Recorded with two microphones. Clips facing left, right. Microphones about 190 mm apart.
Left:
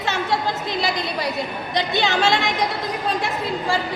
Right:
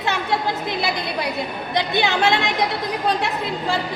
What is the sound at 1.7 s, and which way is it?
Speech, 55° right (ahead or behind).